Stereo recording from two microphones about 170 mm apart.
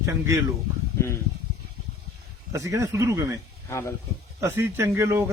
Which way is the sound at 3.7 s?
15° left (ahead or behind).